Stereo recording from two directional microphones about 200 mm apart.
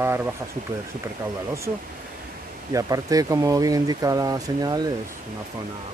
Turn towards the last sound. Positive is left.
turn(degrees=-20)  # may be behind; listen again after turning